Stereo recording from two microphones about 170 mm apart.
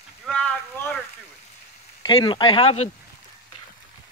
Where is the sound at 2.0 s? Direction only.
25° left (ahead or behind).